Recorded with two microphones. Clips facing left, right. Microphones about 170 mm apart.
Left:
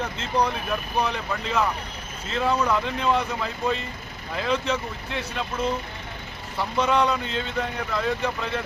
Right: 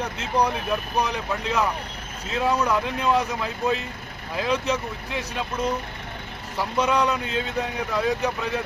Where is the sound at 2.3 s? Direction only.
10° right (ahead or behind).